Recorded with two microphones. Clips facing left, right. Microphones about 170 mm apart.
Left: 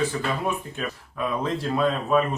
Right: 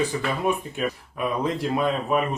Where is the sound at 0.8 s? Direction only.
15° right (ahead or behind).